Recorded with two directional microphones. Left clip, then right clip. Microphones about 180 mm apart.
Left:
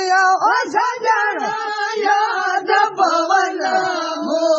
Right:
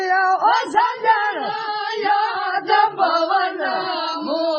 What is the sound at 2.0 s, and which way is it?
Choir, 45° left (ahead or behind).